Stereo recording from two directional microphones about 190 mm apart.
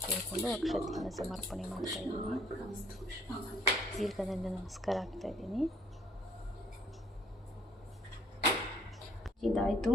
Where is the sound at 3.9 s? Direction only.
Centre (ahead or behind).